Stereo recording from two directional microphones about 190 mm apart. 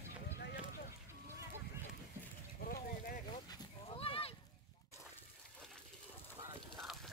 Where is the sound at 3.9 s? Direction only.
30° left (ahead or behind).